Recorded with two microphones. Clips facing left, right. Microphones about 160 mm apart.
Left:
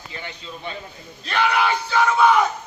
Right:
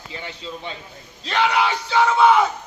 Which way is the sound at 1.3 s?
20° right (ahead or behind).